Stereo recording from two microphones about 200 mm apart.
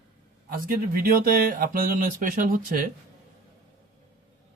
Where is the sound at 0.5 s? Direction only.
45° right (ahead or behind).